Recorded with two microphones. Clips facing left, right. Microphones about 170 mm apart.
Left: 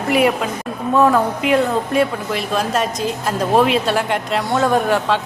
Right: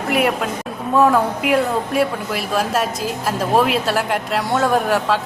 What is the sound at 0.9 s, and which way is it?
Speech, 5° right (ahead or behind).